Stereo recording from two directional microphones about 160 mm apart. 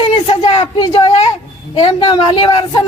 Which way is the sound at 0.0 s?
35° left (ahead or behind).